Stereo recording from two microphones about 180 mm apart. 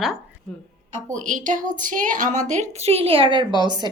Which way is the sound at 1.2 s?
45° right (ahead or behind).